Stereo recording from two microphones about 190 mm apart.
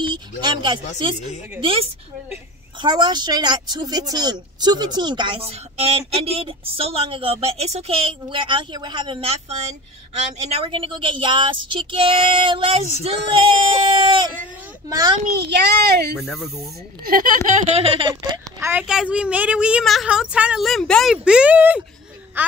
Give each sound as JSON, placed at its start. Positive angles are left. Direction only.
{"t": 0.4, "sound": "speech", "side_deg": -25}
{"t": 2.8, "sound": "speech", "side_deg": -20}
{"t": 15.3, "sound": "a child's voice", "side_deg": -60}
{"t": 16.2, "sound": "a woman's voice", "side_deg": 0}
{"t": 17.5, "sound": "speech", "side_deg": -35}
{"t": 18.7, "sound": "a woman's voice", "side_deg": -5}